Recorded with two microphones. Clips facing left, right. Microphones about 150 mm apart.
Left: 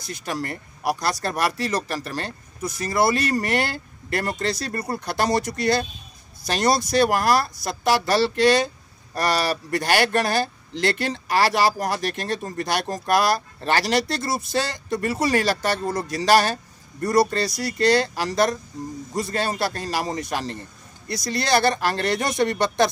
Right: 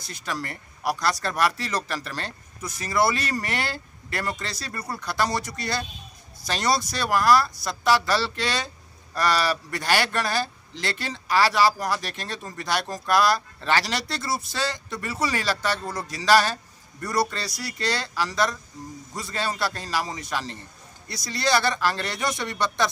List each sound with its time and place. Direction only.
0.1 s speech: 45° left (ahead or behind)